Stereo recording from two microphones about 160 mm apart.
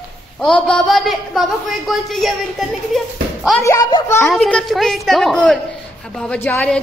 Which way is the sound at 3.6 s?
25° left (ahead or behind).